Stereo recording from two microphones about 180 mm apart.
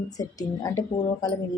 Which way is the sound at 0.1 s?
20° left (ahead or behind).